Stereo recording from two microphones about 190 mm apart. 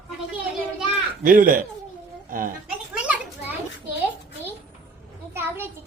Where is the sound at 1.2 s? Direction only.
45° right (ahead or behind).